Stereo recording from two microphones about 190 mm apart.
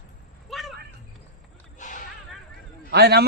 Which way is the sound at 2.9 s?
60° right (ahead or behind).